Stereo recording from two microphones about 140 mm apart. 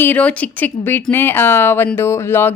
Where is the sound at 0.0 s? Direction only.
10° left (ahead or behind).